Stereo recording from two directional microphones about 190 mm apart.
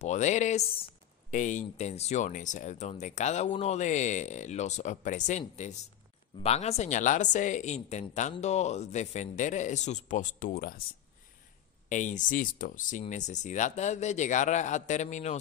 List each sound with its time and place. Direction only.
0.0 s speech: 40° left (ahead or behind)
6.4 s speech: 35° left (ahead or behind); by 10.8 s 50° left (ahead or behind)
11.9 s speech: 40° left (ahead or behind)